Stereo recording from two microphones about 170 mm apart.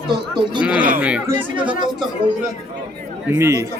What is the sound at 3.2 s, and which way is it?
Speech, 15° right (ahead or behind).